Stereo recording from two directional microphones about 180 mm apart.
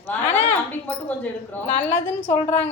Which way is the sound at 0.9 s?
10° left (ahead or behind).